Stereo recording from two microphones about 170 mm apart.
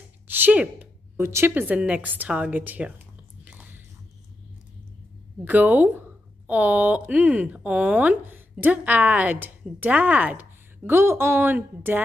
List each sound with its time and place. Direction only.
0.3 s speech: 10° right (ahead or behind)
3.4 s biting: 10° right (ahead or behind)
5.4 s speech: 10° right (ahead or behind)